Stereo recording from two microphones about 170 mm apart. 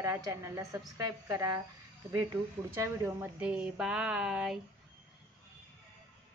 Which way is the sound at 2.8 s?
15° right (ahead or behind).